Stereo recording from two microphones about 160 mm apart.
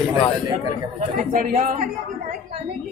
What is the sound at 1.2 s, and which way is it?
Speech, 55° right (ahead or behind).